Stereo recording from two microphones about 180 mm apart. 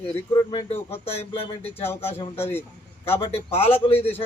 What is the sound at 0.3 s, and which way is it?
A man's voice, 25° left (ahead or behind).